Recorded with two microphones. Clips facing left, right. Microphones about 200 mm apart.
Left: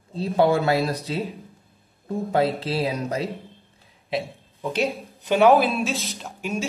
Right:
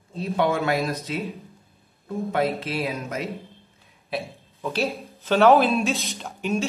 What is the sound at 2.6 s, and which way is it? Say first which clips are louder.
Speech: left 3 dB; 30° left (ahead or behind).